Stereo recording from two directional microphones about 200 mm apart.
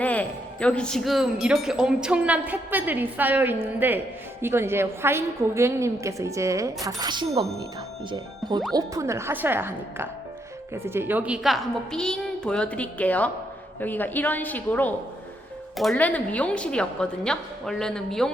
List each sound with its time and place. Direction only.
0.0 s a woman's voice: 5° left (ahead or behind)